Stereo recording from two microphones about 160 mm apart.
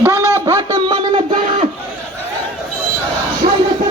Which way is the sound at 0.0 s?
15° right (ahead or behind).